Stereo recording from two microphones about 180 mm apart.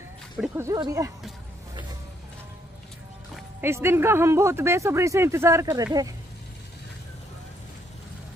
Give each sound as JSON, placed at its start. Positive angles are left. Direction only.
{"t": 0.6, "sound": "speech", "side_deg": -20}
{"t": 3.6, "sound": "speech", "side_deg": -15}